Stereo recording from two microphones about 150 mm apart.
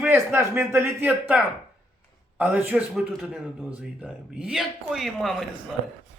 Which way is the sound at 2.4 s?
10° right (ahead or behind).